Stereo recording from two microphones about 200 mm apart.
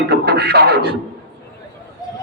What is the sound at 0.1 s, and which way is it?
Music, 55° right (ahead or behind).